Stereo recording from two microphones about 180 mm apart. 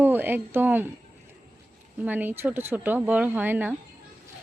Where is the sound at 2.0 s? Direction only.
10° right (ahead or behind).